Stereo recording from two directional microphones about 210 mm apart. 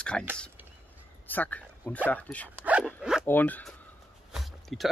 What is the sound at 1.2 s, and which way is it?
Speech, 10° left (ahead or behind).